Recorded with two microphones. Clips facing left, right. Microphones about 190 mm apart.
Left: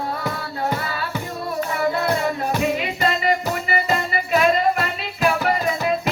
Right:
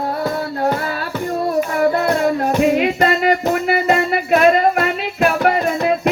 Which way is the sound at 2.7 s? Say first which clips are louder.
Right 7 dB; 50° right (ahead or behind).